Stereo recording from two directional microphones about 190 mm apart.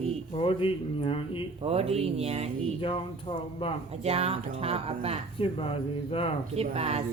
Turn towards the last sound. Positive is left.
turn(degrees=-30)  # may be behind; listen again after turning